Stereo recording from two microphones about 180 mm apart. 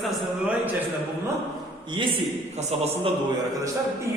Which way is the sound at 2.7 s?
35° right (ahead or behind).